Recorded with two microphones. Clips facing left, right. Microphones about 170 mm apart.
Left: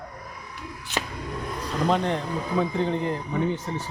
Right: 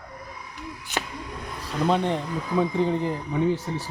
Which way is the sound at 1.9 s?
Centre (ahead or behind).